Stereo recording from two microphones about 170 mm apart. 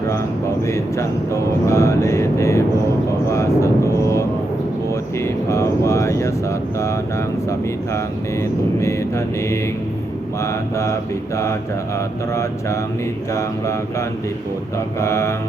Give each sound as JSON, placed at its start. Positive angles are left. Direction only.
{"t": 0.6, "sound": "speech", "side_deg": 15}
{"t": 3.2, "sound": "vehicle", "side_deg": 15}
{"t": 5.2, "sound": "a sound", "side_deg": 15}
{"t": 8.8, "sound": "mantra", "side_deg": 15}
{"t": 10.4, "sound": "speech", "side_deg": 15}
{"t": 15.0, "sound": "speech", "side_deg": 15}